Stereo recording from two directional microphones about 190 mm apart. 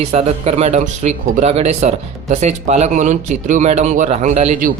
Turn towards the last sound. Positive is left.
turn(degrees=-40)  # may be behind; listen again after turning